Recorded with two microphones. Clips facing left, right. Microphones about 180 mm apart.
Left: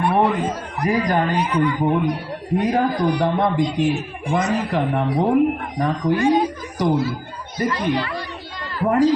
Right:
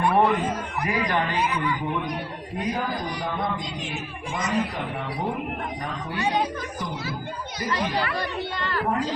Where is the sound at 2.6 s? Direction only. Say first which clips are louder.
Left 9 dB; 70° left (ahead or behind).